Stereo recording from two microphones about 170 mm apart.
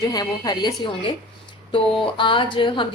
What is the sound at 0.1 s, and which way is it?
A woman's voice, 25° left (ahead or behind).